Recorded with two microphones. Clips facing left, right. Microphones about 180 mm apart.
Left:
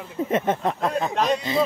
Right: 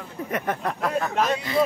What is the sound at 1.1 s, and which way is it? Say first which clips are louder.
Speech: left 2 dB; 5° right (ahead or behind).